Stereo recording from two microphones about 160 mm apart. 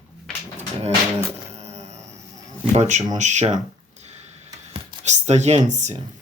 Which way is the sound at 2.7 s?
45° right (ahead or behind).